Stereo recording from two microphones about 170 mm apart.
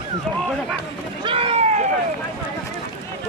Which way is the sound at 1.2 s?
35° right (ahead or behind).